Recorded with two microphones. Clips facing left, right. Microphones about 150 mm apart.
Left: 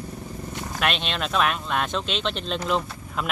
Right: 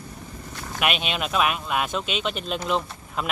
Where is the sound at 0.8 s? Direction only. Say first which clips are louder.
Right 1 dB; 5° right (ahead or behind).